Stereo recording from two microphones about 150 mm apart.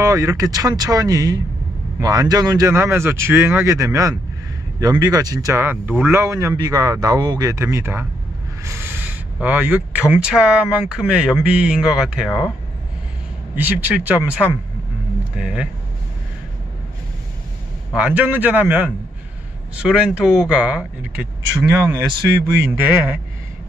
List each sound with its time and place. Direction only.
0.0 s speech: 20° right (ahead or behind); by 12.4 s 5° right (ahead or behind)
13.6 s speech: 10° right (ahead or behind)
17.9 s speech: 10° right (ahead or behind)
22.7 s speech: 10° right (ahead or behind)